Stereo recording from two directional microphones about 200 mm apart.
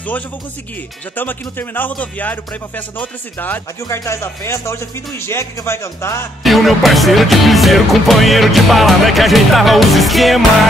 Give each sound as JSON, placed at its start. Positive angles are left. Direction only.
{"t": 1.1, "sound": "speech", "side_deg": 10}
{"t": 6.4, "sound": "music", "side_deg": 0}